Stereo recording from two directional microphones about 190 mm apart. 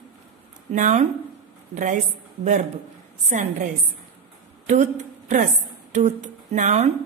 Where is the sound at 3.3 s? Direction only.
40° right (ahead or behind).